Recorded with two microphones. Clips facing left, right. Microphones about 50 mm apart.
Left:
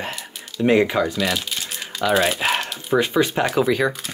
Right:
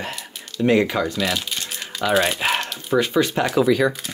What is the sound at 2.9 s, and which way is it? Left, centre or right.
Speech, centre.